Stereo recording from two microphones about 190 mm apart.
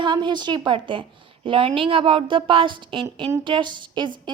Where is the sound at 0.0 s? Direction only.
25° right (ahead or behind).